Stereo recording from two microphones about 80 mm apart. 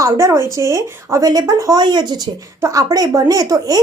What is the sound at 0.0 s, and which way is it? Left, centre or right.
Speech, right.